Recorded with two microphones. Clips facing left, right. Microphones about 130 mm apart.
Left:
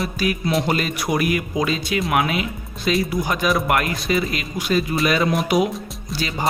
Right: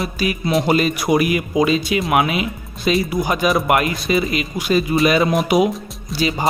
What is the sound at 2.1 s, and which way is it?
Speech, 10° right (ahead or behind).